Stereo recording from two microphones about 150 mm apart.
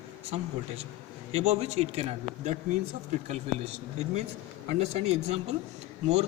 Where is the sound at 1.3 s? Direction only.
45° right (ahead or behind).